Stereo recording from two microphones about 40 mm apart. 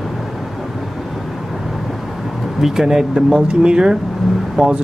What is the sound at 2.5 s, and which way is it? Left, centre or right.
Speech, centre.